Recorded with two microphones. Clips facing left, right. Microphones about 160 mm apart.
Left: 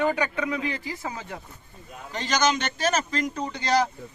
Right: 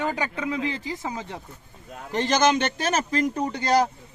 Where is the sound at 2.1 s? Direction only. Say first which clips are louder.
Right 4 dB; 55° right (ahead or behind).